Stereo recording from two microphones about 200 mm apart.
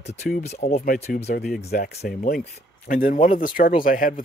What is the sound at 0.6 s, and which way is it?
Speech, 30° left (ahead or behind).